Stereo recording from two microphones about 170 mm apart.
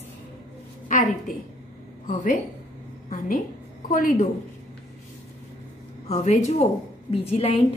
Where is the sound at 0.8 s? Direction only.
50° left (ahead or behind).